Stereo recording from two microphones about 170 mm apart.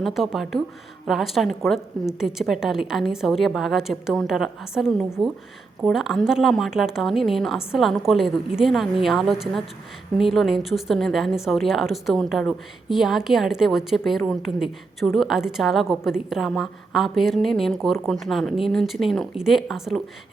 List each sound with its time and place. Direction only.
0.0 s a woman's voice: centre (ahead or behind)